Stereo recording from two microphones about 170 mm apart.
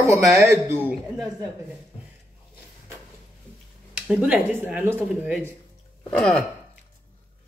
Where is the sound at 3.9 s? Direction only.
5° right (ahead or behind).